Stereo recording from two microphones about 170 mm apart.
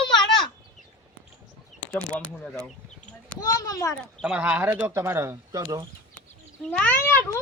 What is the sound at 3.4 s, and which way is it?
Speech, 20° left (ahead or behind).